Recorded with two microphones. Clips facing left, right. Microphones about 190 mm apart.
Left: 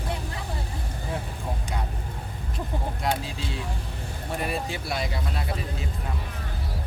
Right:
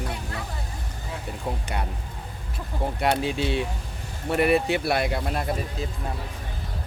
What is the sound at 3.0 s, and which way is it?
A man's voice, 70° right (ahead or behind).